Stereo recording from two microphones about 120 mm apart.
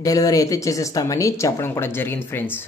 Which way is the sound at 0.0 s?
30° left (ahead or behind).